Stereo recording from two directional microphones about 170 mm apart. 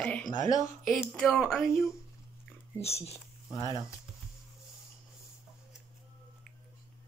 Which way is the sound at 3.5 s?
25° left (ahead or behind).